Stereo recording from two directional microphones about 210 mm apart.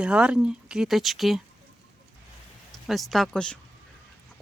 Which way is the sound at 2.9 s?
Centre (ahead or behind).